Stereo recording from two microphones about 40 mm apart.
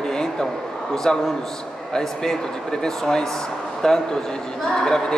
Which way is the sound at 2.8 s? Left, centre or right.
Centre.